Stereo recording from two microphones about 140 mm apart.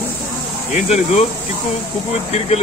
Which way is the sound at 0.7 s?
55° left (ahead or behind).